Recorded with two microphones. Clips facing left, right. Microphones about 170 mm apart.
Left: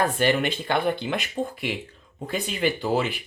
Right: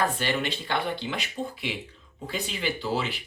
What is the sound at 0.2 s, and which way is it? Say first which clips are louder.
Speech: left 6 dB; 50° left (ahead or behind).